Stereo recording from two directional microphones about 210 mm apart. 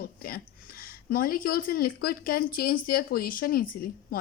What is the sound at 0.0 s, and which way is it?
Speech, 40° left (ahead or behind).